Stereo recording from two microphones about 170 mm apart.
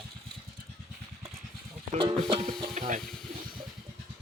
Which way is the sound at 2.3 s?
30° right (ahead or behind).